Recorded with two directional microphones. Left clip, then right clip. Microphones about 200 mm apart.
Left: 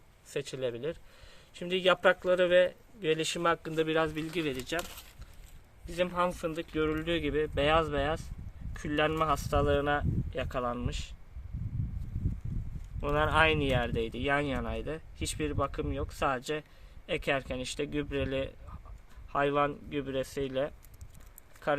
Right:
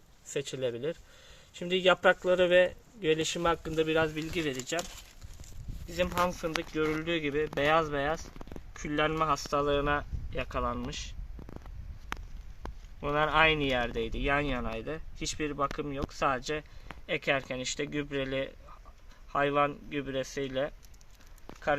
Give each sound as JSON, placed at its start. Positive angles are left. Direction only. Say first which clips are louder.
{"t": 0.3, "sound": "speech", "louder": "right 1 dB", "side_deg": -30}
{"t": 5.9, "sound": "speech", "louder": "right 1 dB", "side_deg": -15}
{"t": 13.0, "sound": "speech", "louder": "right 1 dB", "side_deg": -5}